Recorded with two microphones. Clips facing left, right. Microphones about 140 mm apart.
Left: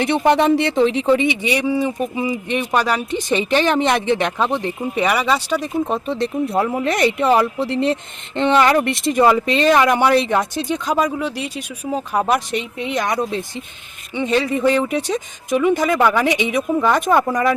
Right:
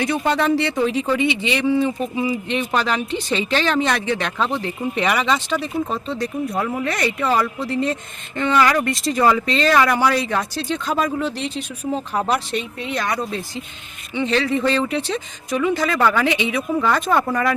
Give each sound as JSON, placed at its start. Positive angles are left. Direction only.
{"t": 0.0, "sound": "speech", "side_deg": 25}